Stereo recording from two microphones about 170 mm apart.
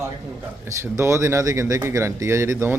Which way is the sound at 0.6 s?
15° right (ahead or behind).